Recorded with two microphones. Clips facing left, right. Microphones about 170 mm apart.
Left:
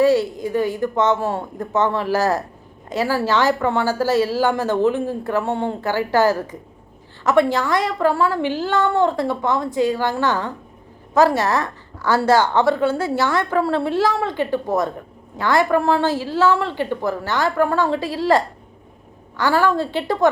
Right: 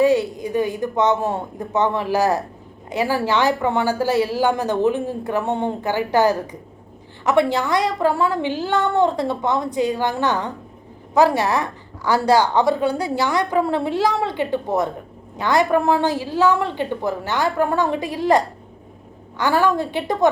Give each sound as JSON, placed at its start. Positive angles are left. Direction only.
{"t": 0.0, "sound": "a woman's voice", "side_deg": -15}